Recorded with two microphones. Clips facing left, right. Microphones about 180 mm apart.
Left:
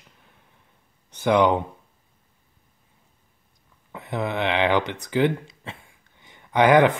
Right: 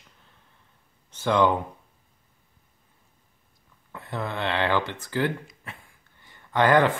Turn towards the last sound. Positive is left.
turn(degrees=15)  # may be behind; listen again after turning